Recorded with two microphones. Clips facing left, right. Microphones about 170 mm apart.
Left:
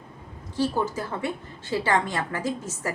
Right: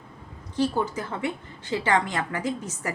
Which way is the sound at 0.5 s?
20° right (ahead or behind).